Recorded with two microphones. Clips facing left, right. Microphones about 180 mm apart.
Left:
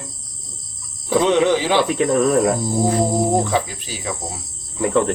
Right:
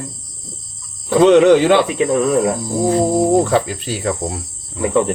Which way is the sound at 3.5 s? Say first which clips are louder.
Right 5 dB; 65° right (ahead or behind).